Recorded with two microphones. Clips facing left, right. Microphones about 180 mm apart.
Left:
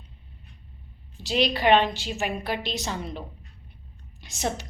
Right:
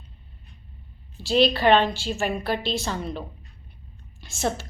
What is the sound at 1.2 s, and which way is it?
A woman's voice, 20° left (ahead or behind).